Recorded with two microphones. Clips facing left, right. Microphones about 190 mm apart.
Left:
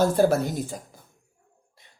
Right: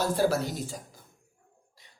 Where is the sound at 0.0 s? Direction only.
50° left (ahead or behind).